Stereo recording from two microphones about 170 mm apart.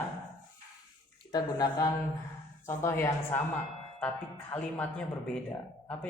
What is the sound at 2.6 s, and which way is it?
Speech, 15° left (ahead or behind).